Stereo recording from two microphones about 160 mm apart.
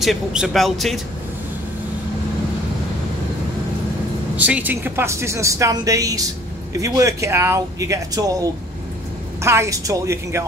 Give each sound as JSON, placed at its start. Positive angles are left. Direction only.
{"t": 0.0, "sound": "speech", "side_deg": 0}
{"t": 4.4, "sound": "a woman's voice", "side_deg": -10}